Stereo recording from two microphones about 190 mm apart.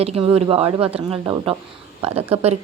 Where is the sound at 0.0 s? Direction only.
30° right (ahead or behind).